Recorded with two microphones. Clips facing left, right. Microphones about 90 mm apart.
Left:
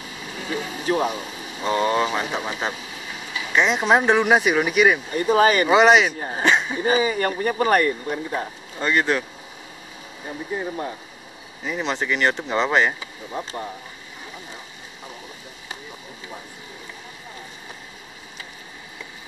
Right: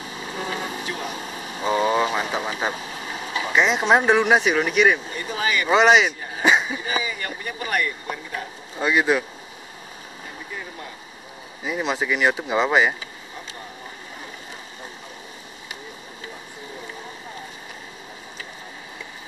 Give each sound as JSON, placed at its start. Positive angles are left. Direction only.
{"t": 0.4, "sound": "vehicle", "side_deg": -40}
{"t": 0.8, "sound": "speech", "side_deg": 40}
{"t": 1.6, "sound": "speech", "side_deg": -5}
{"t": 5.1, "sound": "speech", "side_deg": 40}
{"t": 5.7, "sound": "speech", "side_deg": 0}
{"t": 6.1, "sound": "speech", "side_deg": 40}
{"t": 6.4, "sound": "a sound", "side_deg": -5}
{"t": 6.7, "sound": "speech", "side_deg": 40}
{"t": 8.7, "sound": "speech", "side_deg": -5}
{"t": 10.5, "sound": "speech", "side_deg": 35}
{"t": 11.6, "sound": "speech", "side_deg": -5}